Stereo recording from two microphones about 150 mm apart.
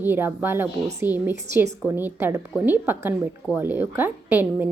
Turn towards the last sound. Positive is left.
turn(degrees=-15)  # may be behind; listen again after turning